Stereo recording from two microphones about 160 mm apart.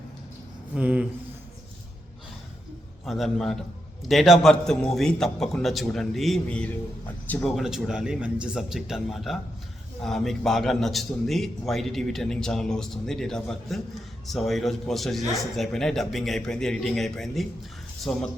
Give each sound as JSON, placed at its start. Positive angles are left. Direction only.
{"t": 0.7, "sound": "speech", "side_deg": -5}
{"t": 3.1, "sound": "a man's voice", "side_deg": 0}